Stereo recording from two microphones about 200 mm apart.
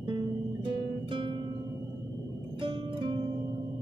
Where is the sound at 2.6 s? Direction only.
25° right (ahead or behind).